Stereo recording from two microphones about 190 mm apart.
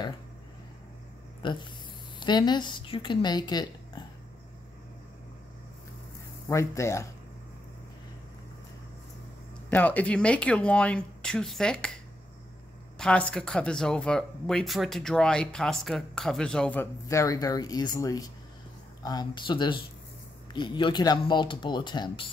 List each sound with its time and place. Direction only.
1.4 s speech: 25° left (ahead or behind)
6.5 s speech: 15° left (ahead or behind)
9.7 s speech: 10° left (ahead or behind)
13.0 s speech: 5° left (ahead or behind); by 22.2 s 25° left (ahead or behind)